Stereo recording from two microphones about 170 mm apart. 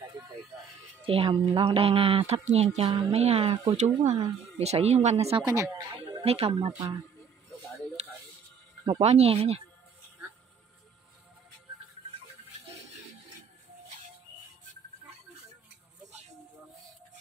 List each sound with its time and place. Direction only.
1.0 s a woman's voice: 30° right (ahead or behind)
5.4 s speech: 15° right (ahead or behind)
6.2 s a woman's voice: 35° right (ahead or behind)
9.0 s a woman's voice: 40° right (ahead or behind)